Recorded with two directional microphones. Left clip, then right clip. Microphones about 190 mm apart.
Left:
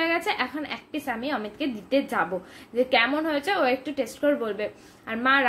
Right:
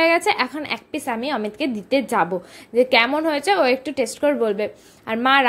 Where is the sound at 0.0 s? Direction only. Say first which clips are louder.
Right 8 dB; 40° right (ahead or behind).